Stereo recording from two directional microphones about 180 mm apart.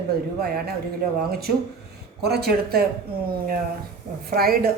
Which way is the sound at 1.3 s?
60° right (ahead or behind).